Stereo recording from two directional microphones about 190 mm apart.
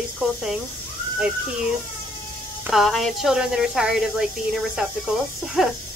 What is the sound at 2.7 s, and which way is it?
Speech, centre (ahead or behind).